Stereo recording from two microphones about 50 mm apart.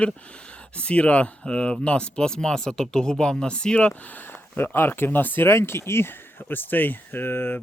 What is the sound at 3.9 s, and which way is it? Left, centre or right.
Speech, left.